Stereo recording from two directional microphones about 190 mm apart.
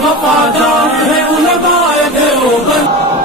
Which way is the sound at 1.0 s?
Centre (ahead or behind).